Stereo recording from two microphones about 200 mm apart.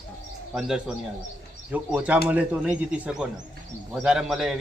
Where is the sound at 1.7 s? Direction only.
5° right (ahead or behind).